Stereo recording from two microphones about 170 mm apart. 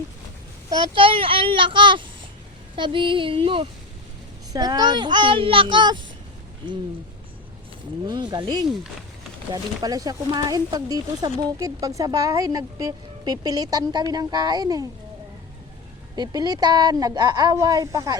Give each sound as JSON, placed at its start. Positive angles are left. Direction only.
{"t": 0.7, "sound": "speech", "side_deg": -30}
{"t": 2.7, "sound": "female singing", "side_deg": -30}
{"t": 4.5, "sound": "speech", "side_deg": -25}
{"t": 8.0, "sound": "speech", "side_deg": -25}
{"t": 16.1, "sound": "speech", "side_deg": -25}